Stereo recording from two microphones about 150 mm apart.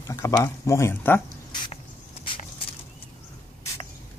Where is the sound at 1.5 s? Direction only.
30° left (ahead or behind).